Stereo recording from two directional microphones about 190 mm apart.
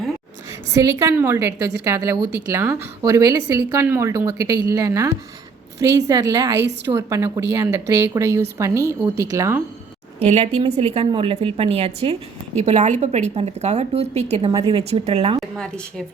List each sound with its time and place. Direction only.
0.7 s a woman's voice: 15° right (ahead or behind)
10.2 s a woman's voice: 35° right (ahead or behind)
14.5 s a woman's voice: 20° right (ahead or behind)
15.5 s a woman's voice: 5° left (ahead or behind)